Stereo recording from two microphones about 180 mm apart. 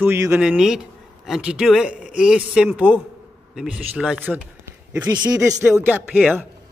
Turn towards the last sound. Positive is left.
turn(degrees=-10)  # may be behind; listen again after turning